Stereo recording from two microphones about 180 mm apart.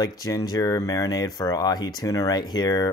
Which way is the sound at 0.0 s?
20° left (ahead or behind).